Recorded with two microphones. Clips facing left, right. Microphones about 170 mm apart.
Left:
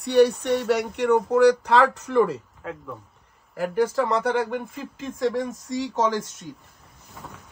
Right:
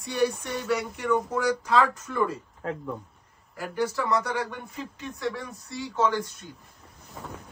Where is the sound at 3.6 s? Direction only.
50° left (ahead or behind).